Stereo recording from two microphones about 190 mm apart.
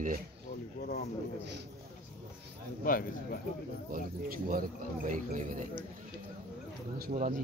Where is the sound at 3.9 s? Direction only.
50° right (ahead or behind).